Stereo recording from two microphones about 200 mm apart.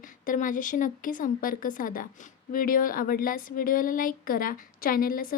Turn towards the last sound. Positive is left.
turn(degrees=45)  # may be behind; listen again after turning